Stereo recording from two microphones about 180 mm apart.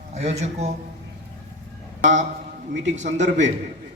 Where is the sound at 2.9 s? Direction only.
40° right (ahead or behind).